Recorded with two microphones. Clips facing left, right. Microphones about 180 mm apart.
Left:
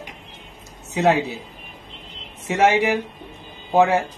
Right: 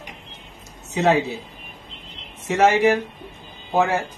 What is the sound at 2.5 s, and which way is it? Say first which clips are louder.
Speech: right 1 dB; 15° left (ahead or behind).